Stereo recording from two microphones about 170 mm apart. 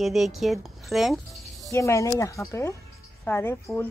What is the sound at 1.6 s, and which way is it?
A woman's voice, 15° left (ahead or behind).